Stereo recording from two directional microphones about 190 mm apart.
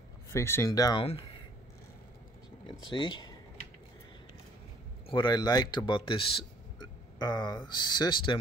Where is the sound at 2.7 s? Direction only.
25° left (ahead or behind).